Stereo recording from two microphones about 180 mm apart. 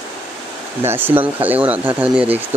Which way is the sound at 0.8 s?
10° right (ahead or behind).